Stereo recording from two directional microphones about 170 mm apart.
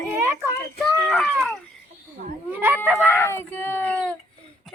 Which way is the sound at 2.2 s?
50° right (ahead or behind).